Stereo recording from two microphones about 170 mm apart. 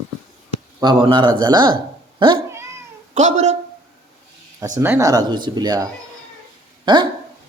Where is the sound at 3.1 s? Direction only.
45° right (ahead or behind).